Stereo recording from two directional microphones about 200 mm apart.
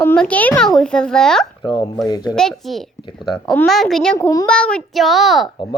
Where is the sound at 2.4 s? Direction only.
Centre (ahead or behind).